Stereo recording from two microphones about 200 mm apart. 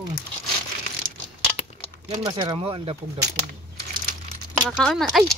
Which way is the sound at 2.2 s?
25° right (ahead or behind).